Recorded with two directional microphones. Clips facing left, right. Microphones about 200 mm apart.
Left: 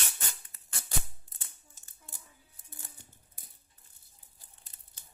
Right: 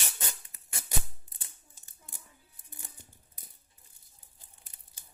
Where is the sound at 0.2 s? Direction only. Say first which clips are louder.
Right 3 dB; 15° right (ahead or behind).